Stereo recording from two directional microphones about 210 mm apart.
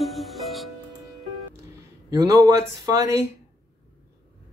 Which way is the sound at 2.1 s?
15° right (ahead or behind).